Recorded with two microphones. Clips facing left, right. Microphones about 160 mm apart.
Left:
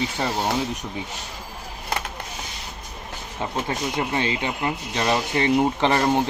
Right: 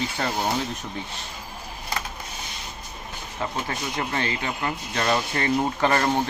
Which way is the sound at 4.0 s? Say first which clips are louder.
Left 2 dB; 15° left (ahead or behind).